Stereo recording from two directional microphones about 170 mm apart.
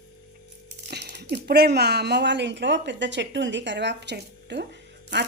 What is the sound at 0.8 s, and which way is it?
Speech, 75° right (ahead or behind).